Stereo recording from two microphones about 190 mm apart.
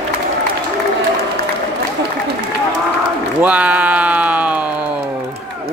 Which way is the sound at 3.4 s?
5° right (ahead or behind).